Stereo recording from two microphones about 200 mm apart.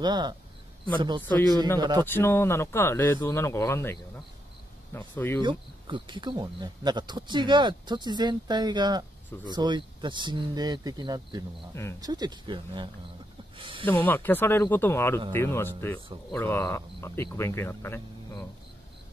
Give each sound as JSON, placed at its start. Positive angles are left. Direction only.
{"t": 0.0, "sound": "speech", "side_deg": -20}
{"t": 1.2, "sound": "speech", "side_deg": 10}
{"t": 1.8, "sound": "speech", "side_deg": -20}
{"t": 2.0, "sound": "speech", "side_deg": 10}
{"t": 5.4, "sound": "speech", "side_deg": -25}
{"t": 13.6, "sound": "a sound", "side_deg": -25}
{"t": 13.8, "sound": "speech", "side_deg": 10}